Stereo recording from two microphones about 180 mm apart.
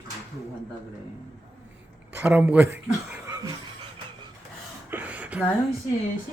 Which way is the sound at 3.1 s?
15° right (ahead or behind).